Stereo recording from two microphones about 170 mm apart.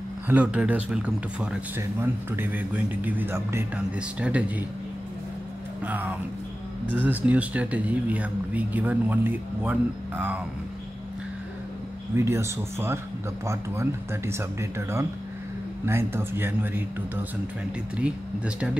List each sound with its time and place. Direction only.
0.3 s speech: 10° right (ahead or behind)
5.9 s speech: 10° right (ahead or behind)
12.2 s speech: 15° right (ahead or behind)